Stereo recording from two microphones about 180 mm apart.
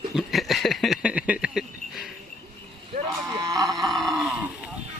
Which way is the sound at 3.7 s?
Centre (ahead or behind).